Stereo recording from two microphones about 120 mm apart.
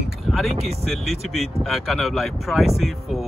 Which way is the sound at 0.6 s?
60° right (ahead or behind).